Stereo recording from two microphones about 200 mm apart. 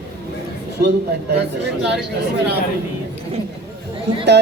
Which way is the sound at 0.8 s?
55° right (ahead or behind).